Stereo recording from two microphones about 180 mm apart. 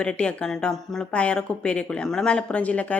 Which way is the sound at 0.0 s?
5° left (ahead or behind).